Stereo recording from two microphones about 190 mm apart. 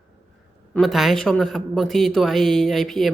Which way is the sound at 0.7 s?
Centre (ahead or behind).